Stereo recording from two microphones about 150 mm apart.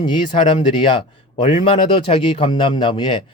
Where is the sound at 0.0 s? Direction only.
30° left (ahead or behind).